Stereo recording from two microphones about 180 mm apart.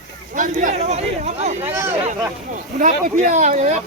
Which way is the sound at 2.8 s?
45° right (ahead or behind).